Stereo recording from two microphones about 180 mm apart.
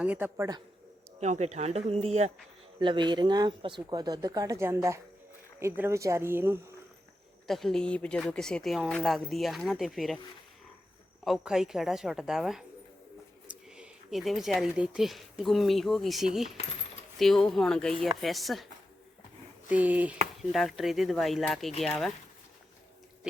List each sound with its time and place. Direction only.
0.0 s speech: 10° right (ahead or behind)
1.2 s speech: 40° right (ahead or behind)
2.8 s speech: 25° right (ahead or behind)
7.4 s speech: centre (ahead or behind)
11.3 s speech: centre (ahead or behind)